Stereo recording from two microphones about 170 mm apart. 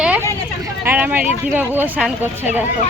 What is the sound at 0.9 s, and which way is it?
Speech, 10° right (ahead or behind).